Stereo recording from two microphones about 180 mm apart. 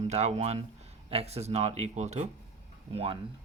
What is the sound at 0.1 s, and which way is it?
Speech, 35° right (ahead or behind).